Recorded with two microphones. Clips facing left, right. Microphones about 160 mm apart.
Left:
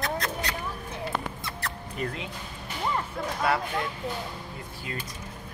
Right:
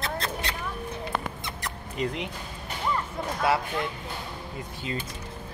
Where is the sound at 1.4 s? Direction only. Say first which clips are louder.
Even; 20° right (ahead or behind).